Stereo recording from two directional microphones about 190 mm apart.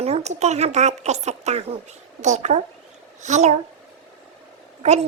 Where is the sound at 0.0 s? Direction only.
35° right (ahead or behind).